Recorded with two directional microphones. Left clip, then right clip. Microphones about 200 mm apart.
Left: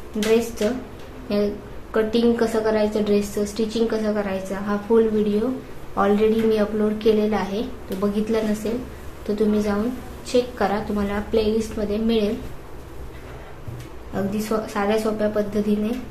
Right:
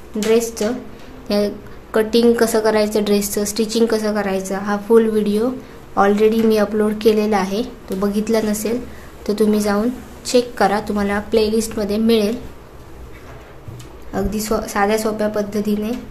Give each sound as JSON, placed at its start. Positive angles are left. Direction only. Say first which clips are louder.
{"t": 1.3, "sound": "a woman's voice", "louder": "right 4 dB", "side_deg": -50}
{"t": 14.1, "sound": "a woman's voice", "louder": "right 4 dB", "side_deg": -45}